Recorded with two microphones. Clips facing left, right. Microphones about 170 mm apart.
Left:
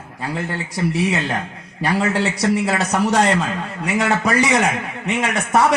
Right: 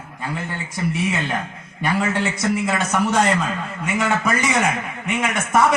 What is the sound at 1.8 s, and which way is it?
A man's voice, 35° left (ahead or behind).